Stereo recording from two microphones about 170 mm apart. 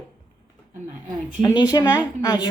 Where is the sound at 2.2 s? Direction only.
25° left (ahead or behind).